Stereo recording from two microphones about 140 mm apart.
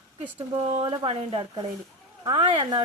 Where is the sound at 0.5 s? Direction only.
40° right (ahead or behind).